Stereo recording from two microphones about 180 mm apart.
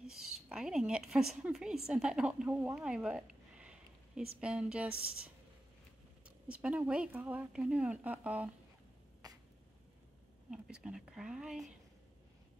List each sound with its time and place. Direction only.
0.0 s a woman's voice: 5° right (ahead or behind)
9.2 s a sound: 20° right (ahead or behind)
10.5 s speech: 5° right (ahead or behind)